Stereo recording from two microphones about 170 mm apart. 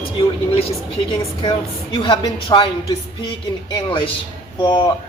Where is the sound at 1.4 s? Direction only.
30° left (ahead or behind).